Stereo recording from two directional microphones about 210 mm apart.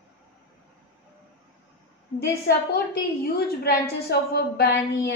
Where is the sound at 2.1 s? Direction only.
50° left (ahead or behind).